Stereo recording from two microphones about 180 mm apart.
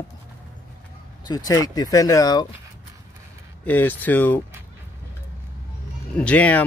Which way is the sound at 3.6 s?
10° left (ahead or behind).